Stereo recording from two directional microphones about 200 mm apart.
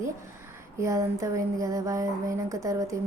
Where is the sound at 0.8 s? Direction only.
15° right (ahead or behind).